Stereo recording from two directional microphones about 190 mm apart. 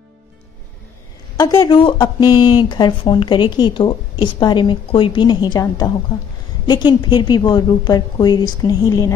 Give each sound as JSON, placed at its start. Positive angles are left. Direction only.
{"t": 1.3, "sound": "speech", "side_deg": 15}